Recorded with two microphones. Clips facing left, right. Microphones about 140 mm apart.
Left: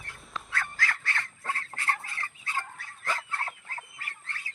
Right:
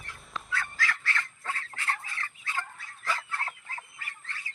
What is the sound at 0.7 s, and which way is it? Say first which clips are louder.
Duck: right 1 dB; 50° left (ahead or behind).